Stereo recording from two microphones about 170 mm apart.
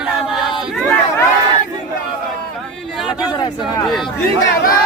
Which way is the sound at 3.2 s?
25° left (ahead or behind).